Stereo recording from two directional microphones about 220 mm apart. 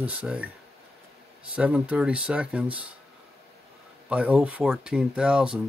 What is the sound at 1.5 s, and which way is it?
Speech, 5° right (ahead or behind).